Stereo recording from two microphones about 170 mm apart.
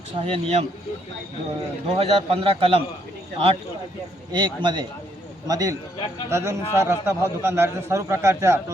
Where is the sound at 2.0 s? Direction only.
35° right (ahead or behind).